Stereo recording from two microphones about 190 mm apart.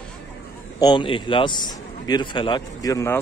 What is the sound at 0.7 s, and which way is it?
A man's voice, 25° left (ahead or behind).